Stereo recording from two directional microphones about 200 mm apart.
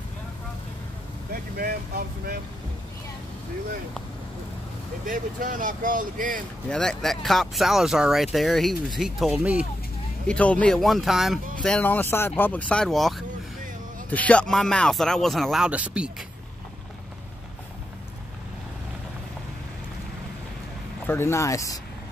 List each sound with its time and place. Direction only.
1.3 s speech: 45° right (ahead or behind)
5.0 s speech: 40° right (ahead or behind)
6.7 s speech: 5° left (ahead or behind)
10.2 s speech: 5° left (ahead or behind)
21.1 s speech: 15° left (ahead or behind)